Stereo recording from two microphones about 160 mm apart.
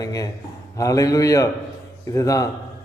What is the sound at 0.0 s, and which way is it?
A man's voice, 20° left (ahead or behind).